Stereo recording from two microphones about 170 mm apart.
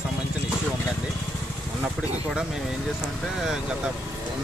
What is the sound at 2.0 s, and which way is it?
Speech, 5° right (ahead or behind).